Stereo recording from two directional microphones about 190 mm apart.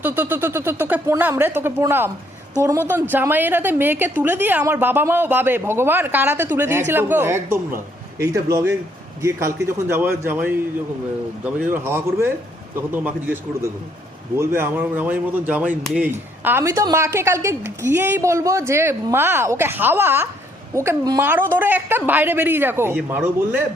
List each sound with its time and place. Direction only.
0.0 s speech: 10° right (ahead or behind)